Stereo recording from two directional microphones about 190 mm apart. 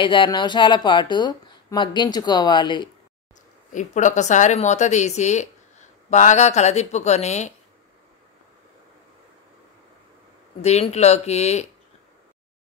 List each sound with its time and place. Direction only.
0.0 s speech: 25° left (ahead or behind)
3.7 s a woman's voice: 40° left (ahead or behind)
10.6 s a woman's voice: 35° left (ahead or behind)